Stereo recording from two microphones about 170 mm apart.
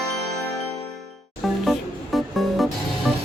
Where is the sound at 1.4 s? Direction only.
Centre (ahead or behind).